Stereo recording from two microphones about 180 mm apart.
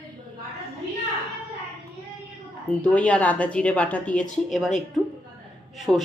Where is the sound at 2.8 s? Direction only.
5° left (ahead or behind).